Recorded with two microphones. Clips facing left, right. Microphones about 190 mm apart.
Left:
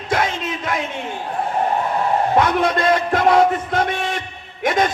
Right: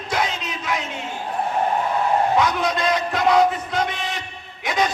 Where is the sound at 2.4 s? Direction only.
55° left (ahead or behind).